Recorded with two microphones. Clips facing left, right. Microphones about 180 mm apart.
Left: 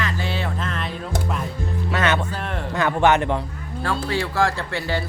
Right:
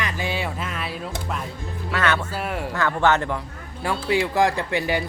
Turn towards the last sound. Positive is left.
turn(degrees=-15)  # may be behind; listen again after turning